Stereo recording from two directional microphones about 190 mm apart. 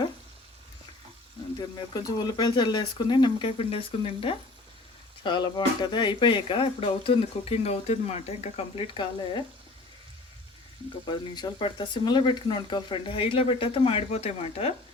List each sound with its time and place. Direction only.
1.9 s speech: 20° left (ahead or behind)
11.1 s speech: 25° left (ahead or behind)